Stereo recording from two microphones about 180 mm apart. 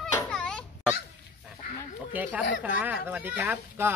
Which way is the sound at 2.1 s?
10° right (ahead or behind).